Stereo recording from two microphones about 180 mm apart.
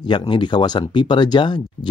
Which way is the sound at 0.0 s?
25° left (ahead or behind).